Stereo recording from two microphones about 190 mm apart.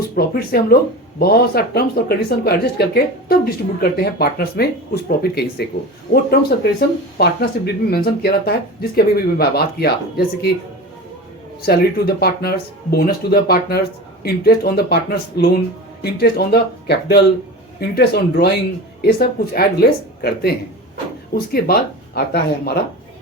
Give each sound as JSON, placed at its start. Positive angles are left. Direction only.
{"t": 0.2, "sound": "speech", "side_deg": 55}
{"t": 11.6, "sound": "speech", "side_deg": 55}